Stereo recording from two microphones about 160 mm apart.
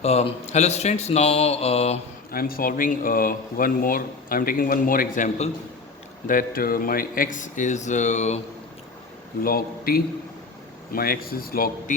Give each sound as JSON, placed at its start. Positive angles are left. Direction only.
{"t": 0.0, "sound": "speech", "side_deg": 40}
{"t": 2.3, "sound": "speech", "side_deg": 65}
{"t": 9.4, "sound": "speech", "side_deg": 65}